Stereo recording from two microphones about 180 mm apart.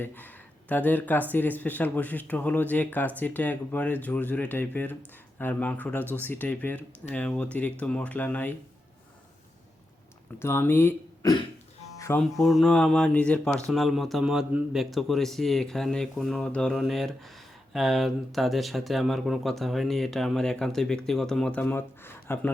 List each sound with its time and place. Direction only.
0.0 s speech: 10° left (ahead or behind)
10.4 s speech: 15° left (ahead or behind)
11.9 s music: 15° left (ahead or behind)
12.2 s a man's voice: centre (ahead or behind)